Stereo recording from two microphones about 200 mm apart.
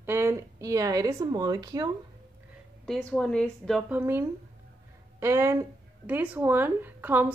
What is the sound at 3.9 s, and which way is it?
Speech, 10° right (ahead or behind).